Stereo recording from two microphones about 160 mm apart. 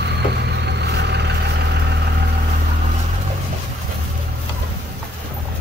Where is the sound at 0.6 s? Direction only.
90° right.